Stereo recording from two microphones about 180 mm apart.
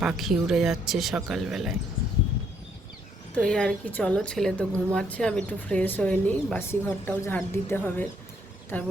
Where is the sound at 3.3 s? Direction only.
5° left (ahead or behind).